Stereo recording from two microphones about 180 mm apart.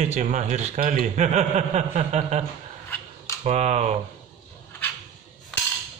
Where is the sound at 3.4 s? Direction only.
35° right (ahead or behind).